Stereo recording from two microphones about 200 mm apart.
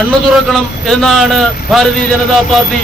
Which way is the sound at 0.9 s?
Centre (ahead or behind).